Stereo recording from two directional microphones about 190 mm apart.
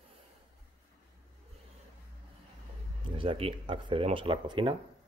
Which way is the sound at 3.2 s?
30° right (ahead or behind).